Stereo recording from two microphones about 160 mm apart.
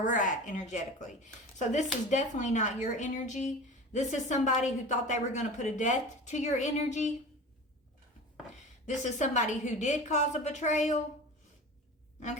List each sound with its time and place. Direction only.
0.0 s speech: 55° left (ahead or behind)
8.9 s speech: 45° left (ahead or behind)